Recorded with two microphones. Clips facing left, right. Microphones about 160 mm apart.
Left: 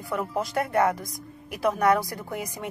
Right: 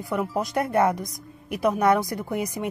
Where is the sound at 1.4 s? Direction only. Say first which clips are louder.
Right 2 dB; 25° right (ahead or behind).